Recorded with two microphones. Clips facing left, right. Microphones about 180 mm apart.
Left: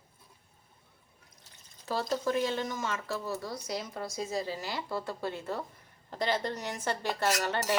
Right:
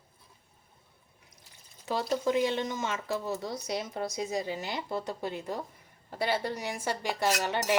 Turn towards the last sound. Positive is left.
turn(degrees=-15)  # may be behind; listen again after turning